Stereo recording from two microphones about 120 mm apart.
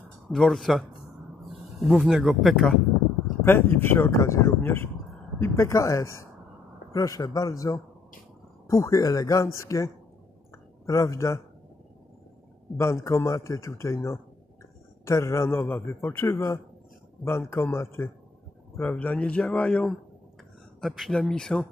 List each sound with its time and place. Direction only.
0.3 s speech: 5° left (ahead or behind)
3.4 s a man's voice: 15° left (ahead or behind)
8.8 s a man's voice: 30° left (ahead or behind)
10.9 s a man's voice: 25° left (ahead or behind)
12.7 s a man's voice: 25° left (ahead or behind); by 21.6 s 5° left (ahead or behind)